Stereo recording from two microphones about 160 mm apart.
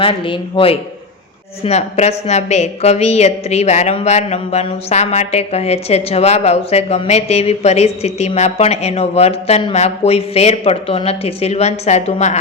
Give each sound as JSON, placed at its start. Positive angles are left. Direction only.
{"t": 0.0, "sound": "a woman's voice", "side_deg": 35}